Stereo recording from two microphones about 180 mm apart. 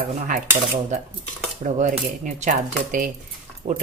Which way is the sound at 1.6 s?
45° right (ahead or behind).